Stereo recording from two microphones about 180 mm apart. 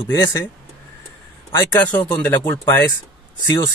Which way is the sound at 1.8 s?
10° left (ahead or behind).